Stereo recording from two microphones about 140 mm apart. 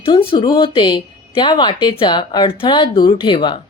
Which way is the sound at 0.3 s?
35° left (ahead or behind).